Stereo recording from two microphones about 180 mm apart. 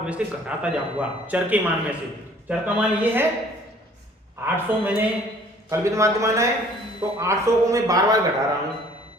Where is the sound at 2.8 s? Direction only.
10° right (ahead or behind).